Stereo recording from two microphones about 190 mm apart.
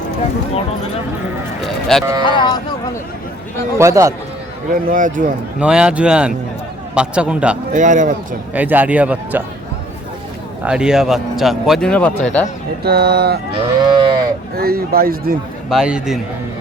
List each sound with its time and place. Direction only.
1.6 s speech: centre (ahead or behind)
2.2 s speech: 25° left (ahead or behind)
3.8 s speech: 15° right (ahead or behind)
4.9 s speech: 45° right (ahead or behind)
5.5 s speech: 5° right (ahead or behind)
7.7 s speech: 40° right (ahead or behind)
8.5 s speech: 10° right (ahead or behind)
10.6 s speech: 5° right (ahead or behind)
12.8 s speech: 55° right (ahead or behind)
13.7 s livestock: 25° right (ahead or behind)
14.5 s speech: 55° right (ahead or behind)
15.7 s speech: 5° right (ahead or behind)